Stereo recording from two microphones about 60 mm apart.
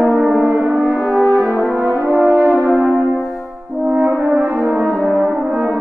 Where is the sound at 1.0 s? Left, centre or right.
Centre.